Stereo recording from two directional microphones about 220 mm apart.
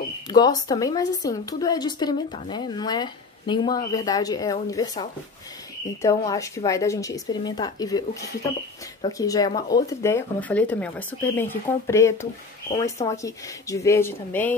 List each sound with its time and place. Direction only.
0.3 s a woman's voice: 15° left (ahead or behind)
6.0 s a woman's voice: 15° left (ahead or behind)
9.2 s a woman's voice: 15° left (ahead or behind)